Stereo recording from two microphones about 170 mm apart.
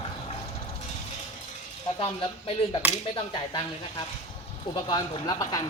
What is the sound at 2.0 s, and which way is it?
Speech, 35° left (ahead or behind).